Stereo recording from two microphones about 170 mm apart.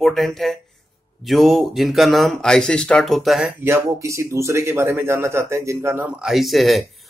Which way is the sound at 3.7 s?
15° right (ahead or behind).